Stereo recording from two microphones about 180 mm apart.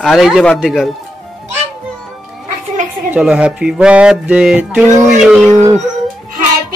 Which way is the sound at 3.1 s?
5° right (ahead or behind).